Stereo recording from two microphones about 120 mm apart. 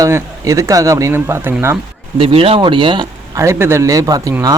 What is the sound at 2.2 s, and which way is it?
Speech, 50° right (ahead or behind).